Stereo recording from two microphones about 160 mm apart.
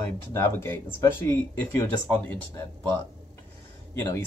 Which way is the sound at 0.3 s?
15° left (ahead or behind).